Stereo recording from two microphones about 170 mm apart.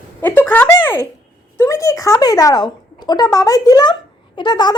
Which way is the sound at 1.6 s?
20° left (ahead or behind).